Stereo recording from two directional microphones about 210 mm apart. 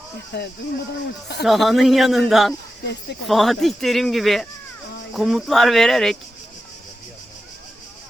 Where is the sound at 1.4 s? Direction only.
Centre (ahead or behind).